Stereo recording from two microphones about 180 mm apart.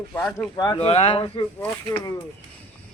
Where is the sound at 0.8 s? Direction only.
35° left (ahead or behind).